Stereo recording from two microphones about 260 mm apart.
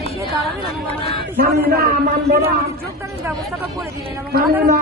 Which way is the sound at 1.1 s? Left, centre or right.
Right.